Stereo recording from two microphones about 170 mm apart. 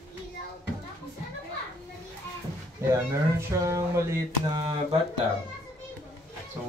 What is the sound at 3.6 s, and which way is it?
Mantra, 15° right (ahead or behind).